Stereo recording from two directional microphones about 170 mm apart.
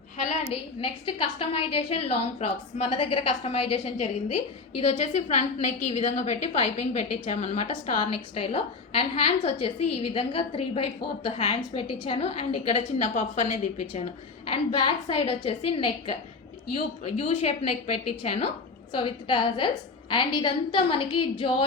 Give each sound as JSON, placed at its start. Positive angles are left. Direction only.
{"t": 0.2, "sound": "a woman's voice", "side_deg": 40}
{"t": 14.5, "sound": "a woman's voice", "side_deg": 30}